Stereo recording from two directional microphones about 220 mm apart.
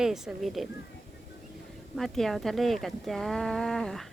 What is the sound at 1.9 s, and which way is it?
Speech, centre (ahead or behind).